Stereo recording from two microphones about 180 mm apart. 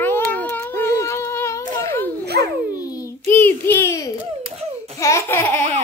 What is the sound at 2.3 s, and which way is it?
Babbling, 65° right (ahead or behind).